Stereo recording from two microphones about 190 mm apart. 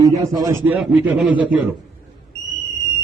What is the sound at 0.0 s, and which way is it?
A man's voice, 15° right (ahead or behind).